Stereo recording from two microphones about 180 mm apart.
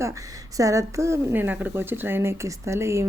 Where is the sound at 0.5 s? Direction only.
20° right (ahead or behind).